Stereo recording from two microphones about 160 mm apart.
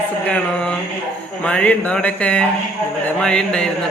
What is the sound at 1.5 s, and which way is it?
A man's voice, 10° left (ahead or behind).